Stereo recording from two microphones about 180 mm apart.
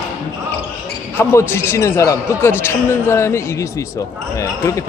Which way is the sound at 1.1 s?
15° left (ahead or behind).